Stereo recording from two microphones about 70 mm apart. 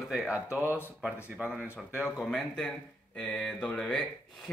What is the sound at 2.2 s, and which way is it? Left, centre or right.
Speech, centre.